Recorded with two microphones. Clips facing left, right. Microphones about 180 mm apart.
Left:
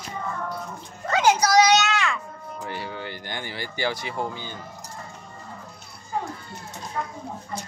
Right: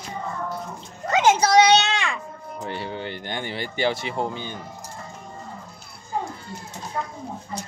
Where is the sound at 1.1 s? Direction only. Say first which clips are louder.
Right 2 dB; 25° right (ahead or behind).